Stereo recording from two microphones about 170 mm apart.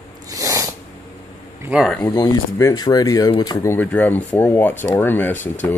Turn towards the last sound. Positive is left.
turn(degrees=10)  # may be behind; listen again after turning